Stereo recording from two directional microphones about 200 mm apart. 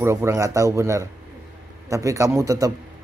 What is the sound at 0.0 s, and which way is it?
A man's voice, 15° right (ahead or behind).